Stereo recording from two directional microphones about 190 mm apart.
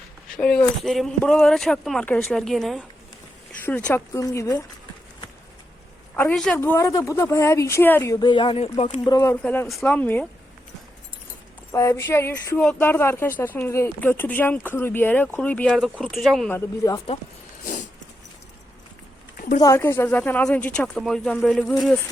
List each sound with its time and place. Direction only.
0.3 s speech: 5° left (ahead or behind)
6.1 s speech: 5° left (ahead or behind)
6.6 s speech: 15° left (ahead or behind); by 9.0 s 30° left (ahead or behind)
9.0 s speech: 15° left (ahead or behind)
11.7 s speech: 15° left (ahead or behind)
16.6 s speech: 15° left (ahead or behind)
19.4 s a sound: 45° left (ahead or behind)
19.6 s speech: 15° left (ahead or behind)